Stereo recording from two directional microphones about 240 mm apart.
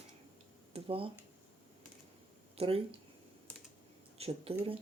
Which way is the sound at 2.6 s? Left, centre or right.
Right.